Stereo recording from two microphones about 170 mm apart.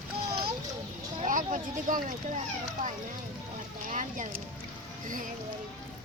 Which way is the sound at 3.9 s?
45° right (ahead or behind).